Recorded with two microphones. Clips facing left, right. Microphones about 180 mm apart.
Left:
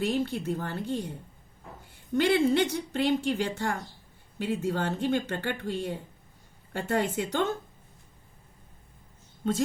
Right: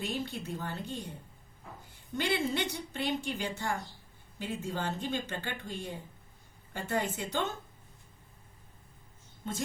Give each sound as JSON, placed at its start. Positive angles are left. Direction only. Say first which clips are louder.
{"t": 0.0, "sound": "a woman's voice", "louder": "left 8 dB", "side_deg": 65}
{"t": 2.1, "sound": "a woman's voice", "louder": "left 8 dB", "side_deg": 55}